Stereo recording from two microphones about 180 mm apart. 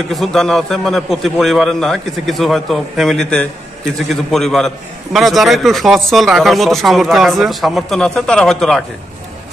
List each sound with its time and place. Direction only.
0.1 s a man's voice: centre (ahead or behind)